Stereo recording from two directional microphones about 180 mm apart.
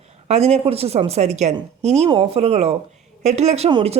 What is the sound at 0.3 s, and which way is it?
Speech, 35° right (ahead or behind).